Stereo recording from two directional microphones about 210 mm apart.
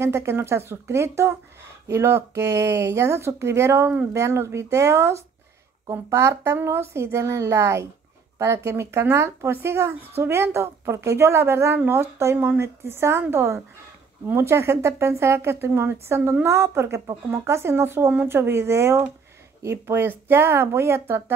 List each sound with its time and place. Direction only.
0.0 s speech: 10° right (ahead or behind)